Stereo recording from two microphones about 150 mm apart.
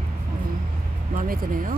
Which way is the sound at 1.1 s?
70° right (ahead or behind).